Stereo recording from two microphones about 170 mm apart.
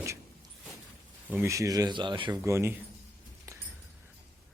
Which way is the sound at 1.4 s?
20° right (ahead or behind).